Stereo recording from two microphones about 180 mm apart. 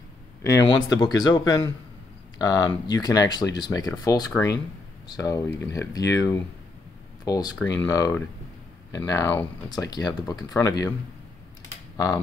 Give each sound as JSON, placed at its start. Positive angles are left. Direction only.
{"t": 0.4, "sound": "speech", "side_deg": 15}